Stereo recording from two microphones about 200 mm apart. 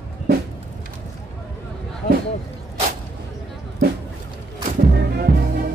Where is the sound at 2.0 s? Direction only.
45° left (ahead or behind).